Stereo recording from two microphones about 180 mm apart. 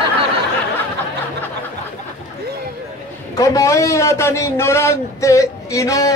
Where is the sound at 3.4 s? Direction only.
20° left (ahead or behind).